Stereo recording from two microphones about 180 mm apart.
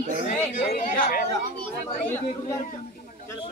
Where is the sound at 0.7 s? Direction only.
55° left (ahead or behind).